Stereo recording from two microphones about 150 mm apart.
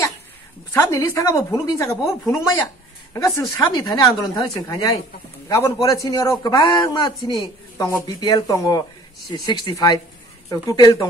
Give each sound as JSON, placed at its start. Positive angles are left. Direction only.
{"t": 0.7, "sound": "a man's voice", "side_deg": 20}